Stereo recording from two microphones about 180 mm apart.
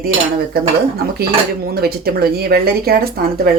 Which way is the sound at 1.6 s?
60° right (ahead or behind).